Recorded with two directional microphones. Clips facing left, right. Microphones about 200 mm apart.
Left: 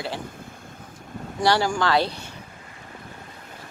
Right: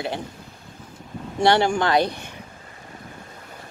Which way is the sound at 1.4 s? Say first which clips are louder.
Right 3 dB; 25° right (ahead or behind).